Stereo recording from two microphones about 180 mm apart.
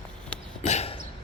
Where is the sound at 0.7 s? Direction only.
35° left (ahead or behind).